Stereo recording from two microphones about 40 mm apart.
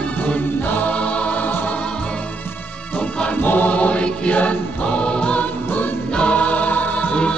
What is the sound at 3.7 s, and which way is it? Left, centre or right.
Music, left.